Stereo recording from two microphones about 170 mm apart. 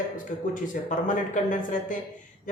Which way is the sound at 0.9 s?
50° left (ahead or behind).